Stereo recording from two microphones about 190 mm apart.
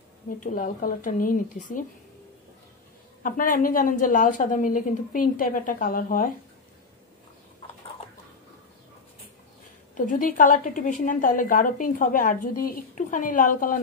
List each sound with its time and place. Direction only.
0.4 s a woman's voice: 45° left (ahead or behind)
3.2 s a woman's voice: 45° left (ahead or behind)
9.9 s a woman's voice: 45° left (ahead or behind)